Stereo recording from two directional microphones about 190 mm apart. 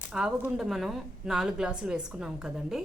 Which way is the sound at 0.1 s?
5° right (ahead or behind).